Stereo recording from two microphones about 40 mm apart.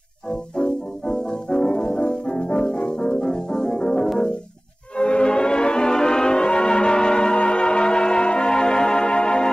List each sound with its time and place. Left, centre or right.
0.3 s music: centre